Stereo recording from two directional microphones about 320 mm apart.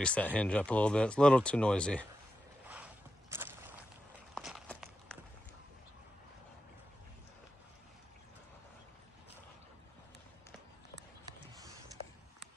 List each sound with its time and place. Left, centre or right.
0.0 s speech: centre
2.7 s walk: centre